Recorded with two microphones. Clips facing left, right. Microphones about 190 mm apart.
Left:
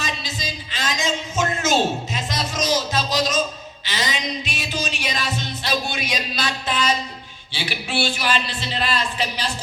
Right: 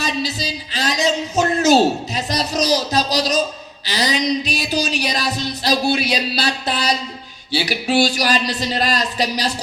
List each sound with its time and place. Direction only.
0.0 s speech: 35° right (ahead or behind)
3.8 s music: 35° right (ahead or behind)
7.5 s a man's voice: 40° right (ahead or behind)